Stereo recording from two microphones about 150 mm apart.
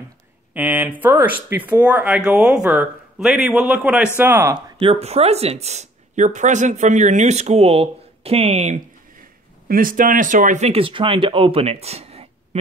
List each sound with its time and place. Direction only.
0.6 s speech: 10° right (ahead or behind)
4.7 s speech: 40° right (ahead or behind)
9.7 s speech: 70° right (ahead or behind); by 12.3 s 45° right (ahead or behind)